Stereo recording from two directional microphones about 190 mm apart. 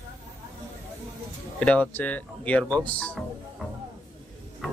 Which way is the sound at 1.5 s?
5° left (ahead or behind).